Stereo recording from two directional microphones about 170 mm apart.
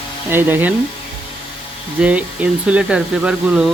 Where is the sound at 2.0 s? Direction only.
10° right (ahead or behind).